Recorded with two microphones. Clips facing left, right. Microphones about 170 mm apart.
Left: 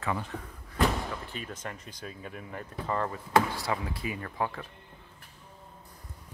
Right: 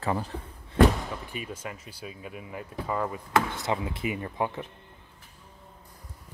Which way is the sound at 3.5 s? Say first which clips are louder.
Right 2 dB; 20° right (ahead or behind).